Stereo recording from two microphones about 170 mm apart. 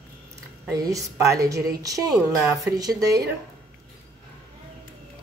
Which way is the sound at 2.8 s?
20° right (ahead or behind).